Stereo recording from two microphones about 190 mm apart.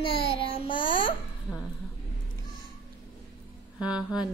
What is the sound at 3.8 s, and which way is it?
Speech, 5° right (ahead or behind).